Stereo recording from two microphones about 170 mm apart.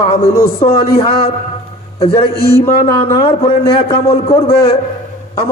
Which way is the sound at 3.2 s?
35° left (ahead or behind).